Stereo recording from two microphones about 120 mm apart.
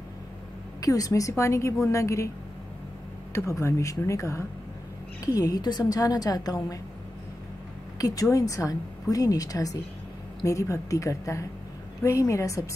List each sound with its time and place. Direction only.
0.7 s a woman's voice: 30° left (ahead or behind)
3.3 s a woman's voice: 25° left (ahead or behind)
8.0 s a woman's voice: 30° left (ahead or behind)